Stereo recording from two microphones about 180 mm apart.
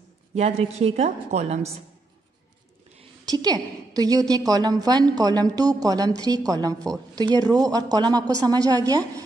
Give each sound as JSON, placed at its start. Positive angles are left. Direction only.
{"t": 0.3, "sound": "a woman's voice", "side_deg": -35}
{"t": 3.3, "sound": "a woman's voice", "side_deg": -20}